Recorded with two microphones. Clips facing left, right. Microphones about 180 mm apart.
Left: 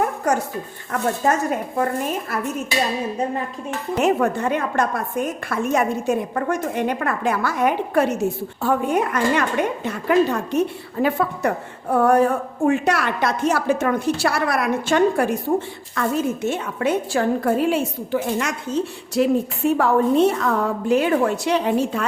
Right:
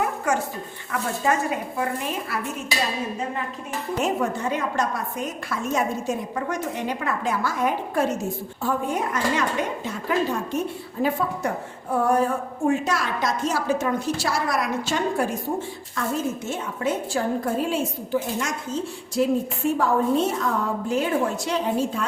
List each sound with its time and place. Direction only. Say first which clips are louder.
0.3 s a woman's voice: left 3 dB; 40° left (ahead or behind)
3.9 s a woman's voice: left 6 dB; 65° left (ahead or behind)